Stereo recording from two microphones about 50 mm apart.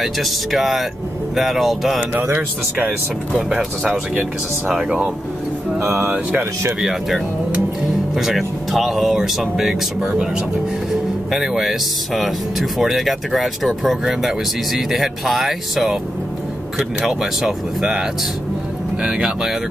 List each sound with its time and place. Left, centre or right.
0.0 s speech: centre
4.2 s speech: centre
6.8 s speech: centre
10.9 s speech: centre
17.1 s speech: centre